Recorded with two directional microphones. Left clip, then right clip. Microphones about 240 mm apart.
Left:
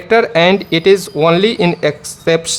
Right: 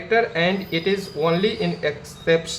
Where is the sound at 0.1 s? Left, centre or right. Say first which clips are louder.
Left 10 dB; left.